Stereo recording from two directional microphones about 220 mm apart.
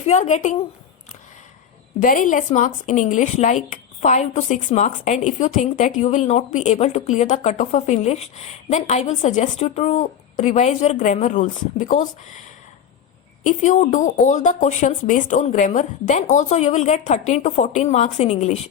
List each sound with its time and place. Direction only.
0.0 s speech: 30° left (ahead or behind)
2.0 s speech: 35° left (ahead or behind)
13.4 s speech: 35° left (ahead or behind)